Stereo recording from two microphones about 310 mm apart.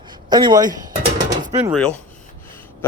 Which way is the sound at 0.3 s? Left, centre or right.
Centre.